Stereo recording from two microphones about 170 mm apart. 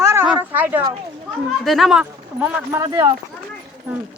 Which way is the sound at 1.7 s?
Centre (ahead or behind).